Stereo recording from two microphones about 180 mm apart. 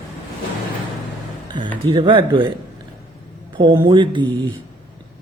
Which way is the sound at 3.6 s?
25° right (ahead or behind).